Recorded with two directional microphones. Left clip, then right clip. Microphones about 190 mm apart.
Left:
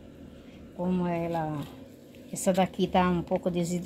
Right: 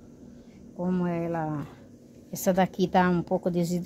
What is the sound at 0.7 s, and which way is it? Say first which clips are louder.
A woman's voice: even; 10° right (ahead or behind).